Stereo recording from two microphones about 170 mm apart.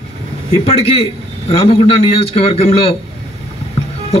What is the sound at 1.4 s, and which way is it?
A man's voice, 35° left (ahead or behind).